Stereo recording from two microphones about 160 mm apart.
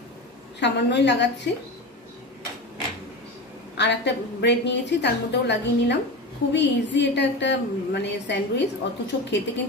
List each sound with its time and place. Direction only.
0.6 s a woman's voice: 90° left
3.7 s a woman's voice: 90° left